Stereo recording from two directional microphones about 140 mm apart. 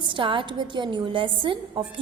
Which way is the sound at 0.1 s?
35° right (ahead or behind).